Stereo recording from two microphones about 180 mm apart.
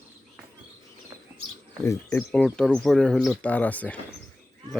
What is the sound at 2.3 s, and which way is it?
Speech, 5° left (ahead or behind).